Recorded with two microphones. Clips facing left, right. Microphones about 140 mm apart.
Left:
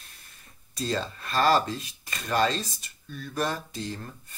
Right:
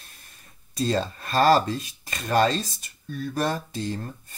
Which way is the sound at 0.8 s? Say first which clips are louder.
Right 5 dB; 35° right (ahead or behind).